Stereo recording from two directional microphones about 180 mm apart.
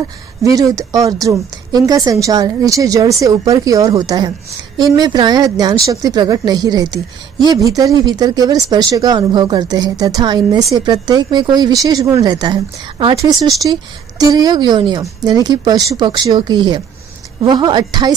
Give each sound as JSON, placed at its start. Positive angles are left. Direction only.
{"t": 0.4, "sound": "speech", "side_deg": -20}